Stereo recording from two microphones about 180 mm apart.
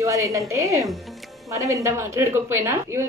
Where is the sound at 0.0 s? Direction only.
15° right (ahead or behind).